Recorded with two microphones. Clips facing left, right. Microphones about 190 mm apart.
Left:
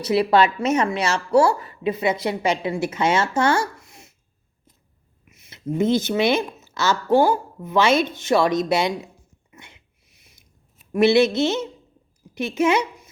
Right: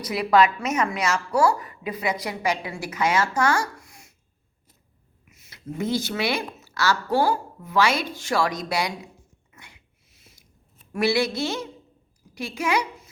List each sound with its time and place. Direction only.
0.0 s speech: 30° left (ahead or behind)
5.3 s speech: 20° left (ahead or behind)
9.5 s a sound: 20° left (ahead or behind)
10.9 s speech: 20° left (ahead or behind)